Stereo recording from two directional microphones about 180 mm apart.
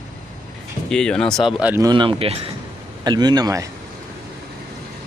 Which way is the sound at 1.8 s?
25° right (ahead or behind).